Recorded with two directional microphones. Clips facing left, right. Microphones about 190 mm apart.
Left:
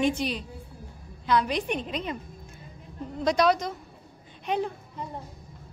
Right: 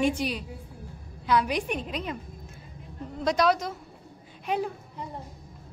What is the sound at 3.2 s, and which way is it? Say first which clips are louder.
A woman's voice: left 1 dB; centre (ahead or behind).